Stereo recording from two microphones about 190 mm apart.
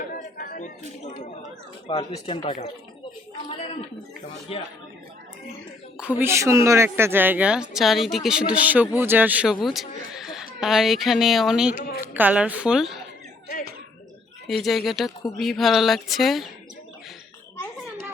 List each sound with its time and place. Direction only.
0.3 s a sound: 45° left (ahead or behind)
1.9 s speech: 30° left (ahead or behind)
4.5 s speech: 30° left (ahead or behind)
6.0 s a woman's voice: 10° right (ahead or behind)
14.4 s speech: centre (ahead or behind)